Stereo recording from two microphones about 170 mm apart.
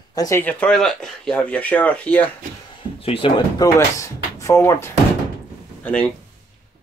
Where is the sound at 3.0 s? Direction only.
35° left (ahead or behind).